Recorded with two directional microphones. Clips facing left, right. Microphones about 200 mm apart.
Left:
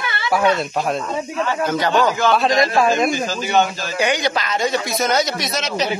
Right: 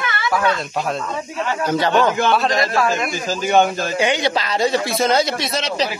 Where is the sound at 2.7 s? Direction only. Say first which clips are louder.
Left 3 dB; 20° left (ahead or behind).